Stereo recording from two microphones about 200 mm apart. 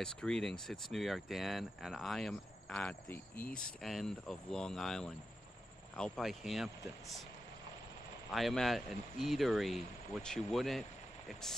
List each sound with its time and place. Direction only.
0.0 s speech: 5° left (ahead or behind)
8.3 s speech: centre (ahead or behind)